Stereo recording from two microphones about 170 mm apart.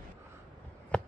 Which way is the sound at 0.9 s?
5° left (ahead or behind).